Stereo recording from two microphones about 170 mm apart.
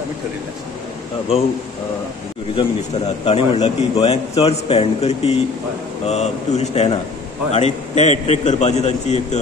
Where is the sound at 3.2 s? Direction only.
35° left (ahead or behind).